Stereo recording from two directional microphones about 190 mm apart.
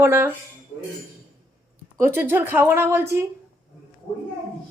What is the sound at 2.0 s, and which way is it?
Speech, 10° right (ahead or behind).